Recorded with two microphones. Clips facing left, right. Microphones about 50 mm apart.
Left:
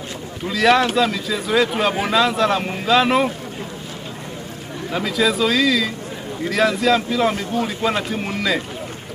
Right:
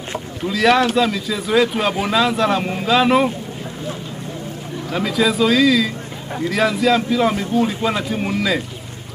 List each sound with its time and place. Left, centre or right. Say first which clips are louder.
0.5 s speech: right 1 dB; centre
4.9 s speech: right 1 dB; centre